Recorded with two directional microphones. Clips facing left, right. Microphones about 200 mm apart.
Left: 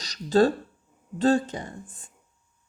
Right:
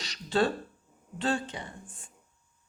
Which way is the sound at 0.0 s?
40° left (ahead or behind).